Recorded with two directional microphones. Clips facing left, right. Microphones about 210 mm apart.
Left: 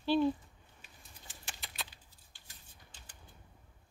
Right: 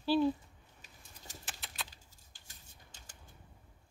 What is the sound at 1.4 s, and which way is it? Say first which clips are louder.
Typing: left 2 dB; centre (ahead or behind).